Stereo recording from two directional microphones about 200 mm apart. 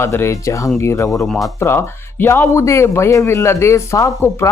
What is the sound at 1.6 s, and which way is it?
Speech, 15° left (ahead or behind).